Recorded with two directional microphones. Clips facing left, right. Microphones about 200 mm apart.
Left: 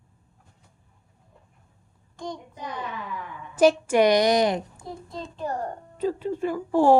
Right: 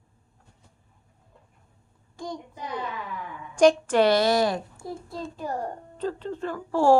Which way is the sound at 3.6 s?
10° left (ahead or behind).